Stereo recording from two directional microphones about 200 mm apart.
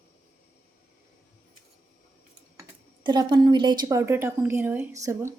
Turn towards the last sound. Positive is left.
turn(degrees=-15)  # may be behind; listen again after turning